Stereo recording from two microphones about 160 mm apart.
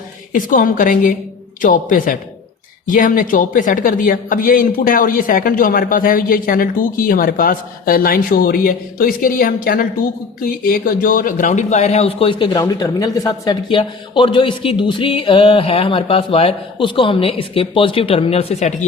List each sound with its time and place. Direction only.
0.3 s a man's voice: 55° left (ahead or behind)